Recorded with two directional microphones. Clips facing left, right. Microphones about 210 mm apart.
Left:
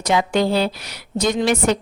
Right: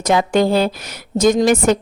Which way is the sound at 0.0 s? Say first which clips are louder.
Right 3 dB; 45° right (ahead or behind).